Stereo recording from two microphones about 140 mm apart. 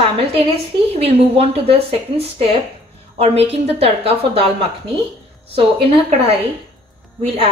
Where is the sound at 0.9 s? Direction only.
45° right (ahead or behind).